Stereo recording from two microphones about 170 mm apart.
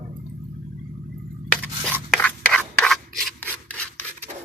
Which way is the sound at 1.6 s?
5° left (ahead or behind).